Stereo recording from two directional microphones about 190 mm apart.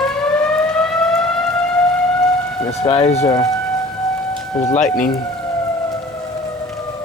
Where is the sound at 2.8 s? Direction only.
30° left (ahead or behind).